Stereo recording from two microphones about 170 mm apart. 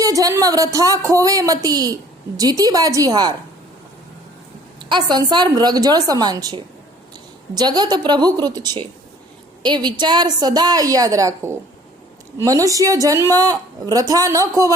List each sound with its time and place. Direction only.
0.0 s speech: 20° right (ahead or behind)
4.8 s speech: 25° right (ahead or behind)